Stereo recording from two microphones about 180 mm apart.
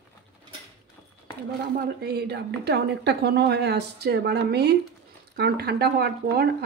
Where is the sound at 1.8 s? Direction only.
65° right (ahead or behind).